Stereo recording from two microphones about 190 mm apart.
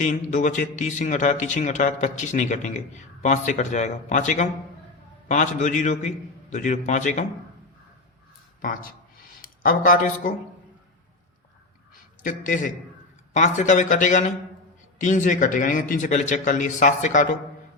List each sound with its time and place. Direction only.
0.0 s speech: 40° left (ahead or behind)
8.6 s a man's voice: 45° left (ahead or behind)
12.2 s a man's voice: 45° left (ahead or behind)